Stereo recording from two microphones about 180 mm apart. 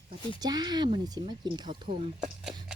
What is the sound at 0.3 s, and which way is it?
Speech, 20° right (ahead or behind).